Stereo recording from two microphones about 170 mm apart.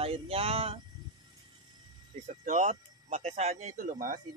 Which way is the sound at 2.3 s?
45° right (ahead or behind).